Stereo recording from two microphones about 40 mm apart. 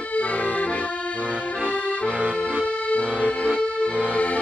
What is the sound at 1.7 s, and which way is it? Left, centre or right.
Music, left.